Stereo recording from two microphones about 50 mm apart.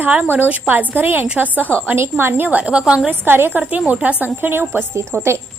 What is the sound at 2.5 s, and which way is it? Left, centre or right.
Speech, right.